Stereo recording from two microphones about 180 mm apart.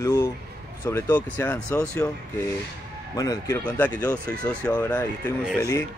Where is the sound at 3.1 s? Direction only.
20° left (ahead or behind).